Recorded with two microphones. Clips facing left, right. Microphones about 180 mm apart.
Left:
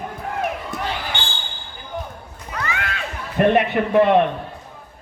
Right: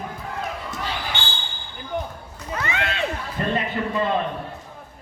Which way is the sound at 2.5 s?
25° right (ahead or behind).